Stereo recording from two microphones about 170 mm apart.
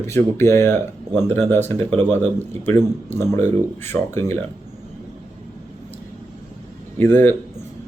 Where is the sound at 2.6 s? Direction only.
15° left (ahead or behind).